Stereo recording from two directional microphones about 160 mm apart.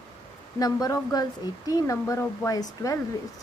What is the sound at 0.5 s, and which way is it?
A woman's voice, 20° left (ahead or behind).